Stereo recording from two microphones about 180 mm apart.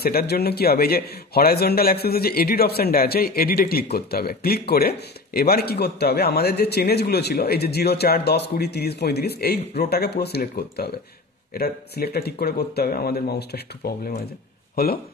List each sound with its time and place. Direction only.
0.0 s speech: 60° left (ahead or behind)